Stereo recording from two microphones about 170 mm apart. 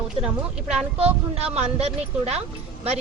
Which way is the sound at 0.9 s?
35° right (ahead or behind).